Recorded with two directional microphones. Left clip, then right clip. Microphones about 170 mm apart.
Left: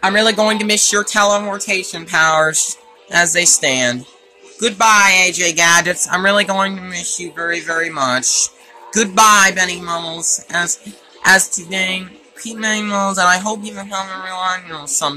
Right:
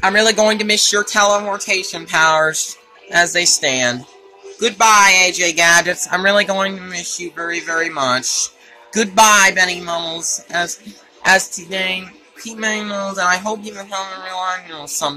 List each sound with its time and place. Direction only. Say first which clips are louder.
0.0 s speech: even; 10° left (ahead or behind)
11.2 s speech: left 2 dB; 15° left (ahead or behind)
12.8 s speech: left 4 dB; 30° left (ahead or behind)
13.3 s speech: left 2 dB; 15° left (ahead or behind)